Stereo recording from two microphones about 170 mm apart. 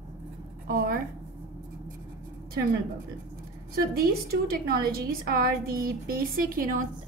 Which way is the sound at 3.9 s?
65° right (ahead or behind).